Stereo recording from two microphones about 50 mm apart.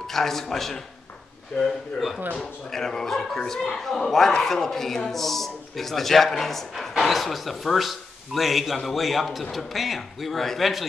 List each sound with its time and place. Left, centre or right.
0.0 s a man's voice: centre